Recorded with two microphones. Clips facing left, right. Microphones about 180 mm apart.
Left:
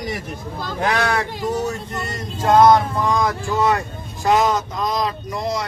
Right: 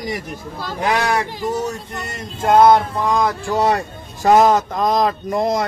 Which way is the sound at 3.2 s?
35° right (ahead or behind).